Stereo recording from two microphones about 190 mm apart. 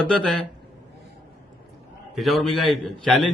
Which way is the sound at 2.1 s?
Centre (ahead or behind).